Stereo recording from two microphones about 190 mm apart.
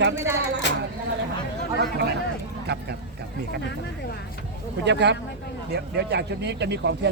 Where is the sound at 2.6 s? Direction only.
60° right (ahead or behind).